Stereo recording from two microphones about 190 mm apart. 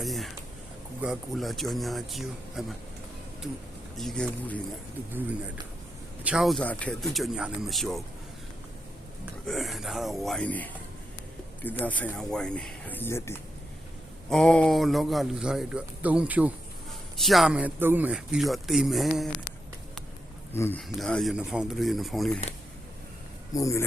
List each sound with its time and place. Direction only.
0.0 s a sound: centre (ahead or behind)
1.0 s speech: centre (ahead or behind)
3.9 s speech: 5° left (ahead or behind)
6.2 s speech: centre (ahead or behind)
9.5 s speech: centre (ahead or behind)
14.3 s speech: 5° left (ahead or behind)
20.5 s speech: 10° left (ahead or behind)
23.6 s speech: 15° left (ahead or behind)